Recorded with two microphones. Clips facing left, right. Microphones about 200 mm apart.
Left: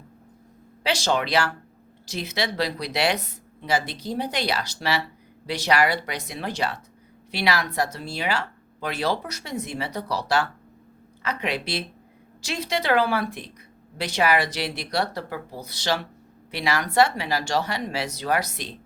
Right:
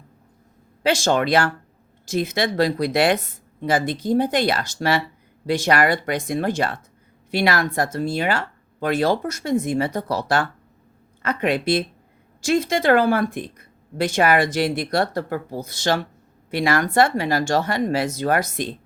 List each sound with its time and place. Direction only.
0.8 s speech: 50° right (ahead or behind)